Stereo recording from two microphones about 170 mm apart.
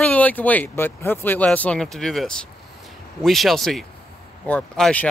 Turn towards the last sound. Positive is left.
turn(degrees=5)  # may be behind; listen again after turning